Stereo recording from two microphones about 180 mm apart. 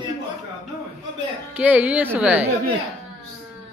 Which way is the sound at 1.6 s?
10° right (ahead or behind).